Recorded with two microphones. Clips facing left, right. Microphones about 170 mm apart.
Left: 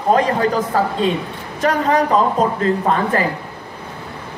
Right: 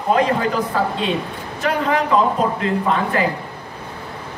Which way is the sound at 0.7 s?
40° left (ahead or behind).